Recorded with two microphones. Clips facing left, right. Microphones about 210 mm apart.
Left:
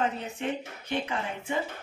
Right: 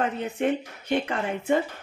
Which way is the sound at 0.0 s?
55° right (ahead or behind).